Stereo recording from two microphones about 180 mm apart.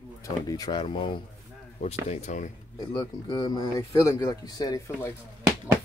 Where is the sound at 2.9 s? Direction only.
25° left (ahead or behind).